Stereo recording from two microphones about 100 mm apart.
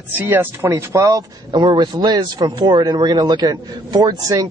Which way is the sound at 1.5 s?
45° right (ahead or behind).